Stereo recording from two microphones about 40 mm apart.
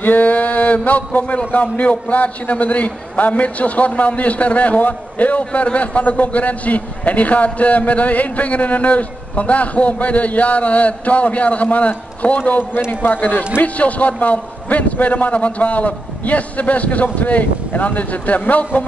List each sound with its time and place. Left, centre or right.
0.0 s mantra: left
0.8 s a man's voice: left